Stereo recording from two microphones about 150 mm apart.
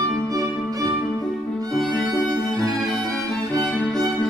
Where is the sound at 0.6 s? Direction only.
20° right (ahead or behind).